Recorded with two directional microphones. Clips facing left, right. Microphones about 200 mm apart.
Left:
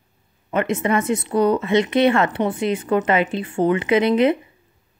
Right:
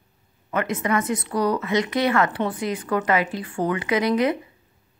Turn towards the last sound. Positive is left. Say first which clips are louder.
# left 4 dB
turn(degrees=25)  # may be behind; listen again after turning